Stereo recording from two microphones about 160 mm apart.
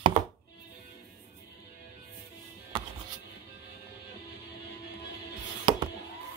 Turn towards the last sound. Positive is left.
turn(degrees=-30)  # may be behind; listen again after turning